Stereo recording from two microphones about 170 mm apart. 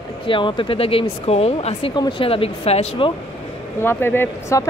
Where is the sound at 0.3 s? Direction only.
30° left (ahead or behind).